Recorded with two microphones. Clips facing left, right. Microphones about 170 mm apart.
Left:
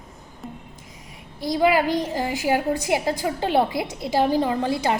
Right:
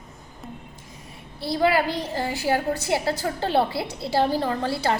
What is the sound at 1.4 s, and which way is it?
A woman's voice, 15° left (ahead or behind).